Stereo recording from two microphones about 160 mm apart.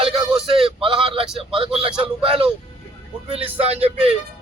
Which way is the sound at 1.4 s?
35° right (ahead or behind).